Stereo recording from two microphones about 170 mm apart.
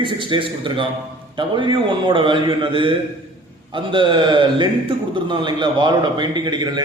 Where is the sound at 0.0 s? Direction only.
30° right (ahead or behind).